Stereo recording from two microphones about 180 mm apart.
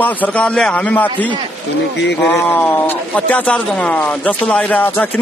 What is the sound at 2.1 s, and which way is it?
Speech, 10° left (ahead or behind).